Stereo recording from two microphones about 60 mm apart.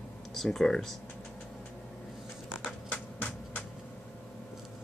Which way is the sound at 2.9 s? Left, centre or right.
Left.